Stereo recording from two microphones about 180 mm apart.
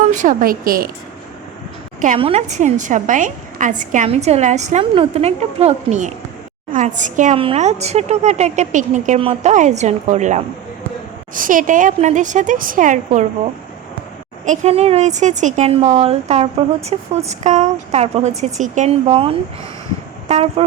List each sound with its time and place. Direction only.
0.0 s a woman's voice: 45° right (ahead or behind)
2.1 s a woman's voice: 35° right (ahead or behind)
14.4 s a woman's voice: 40° right (ahead or behind)
20.2 s a sound: 35° right (ahead or behind)